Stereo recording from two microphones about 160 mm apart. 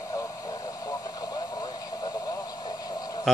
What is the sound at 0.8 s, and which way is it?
Radio, 20° left (ahead or behind).